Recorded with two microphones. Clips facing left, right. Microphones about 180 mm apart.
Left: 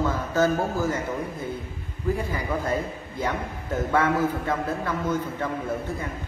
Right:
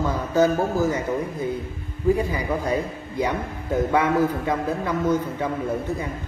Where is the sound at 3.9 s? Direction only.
15° right (ahead or behind).